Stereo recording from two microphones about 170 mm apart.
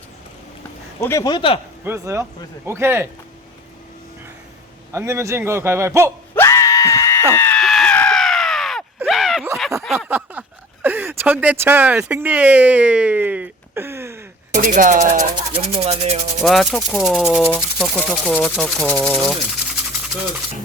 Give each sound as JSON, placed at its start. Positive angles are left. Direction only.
{"t": 1.0, "sound": "speech", "side_deg": 20}
{"t": 1.8, "sound": "a man's voice", "side_deg": -15}
{"t": 4.9, "sound": "a man's voice", "side_deg": -15}
{"t": 6.3, "sound": "screaming", "side_deg": 15}
{"t": 7.6, "sound": "a sound", "side_deg": 0}
{"t": 10.8, "sound": "speech", "side_deg": -10}
{"t": 14.5, "sound": "speech", "side_deg": -50}
{"t": 15.5, "sound": "speech", "side_deg": -35}
{"t": 16.4, "sound": "speech", "side_deg": 0}
{"t": 19.3, "sound": "toothbrush", "side_deg": 0}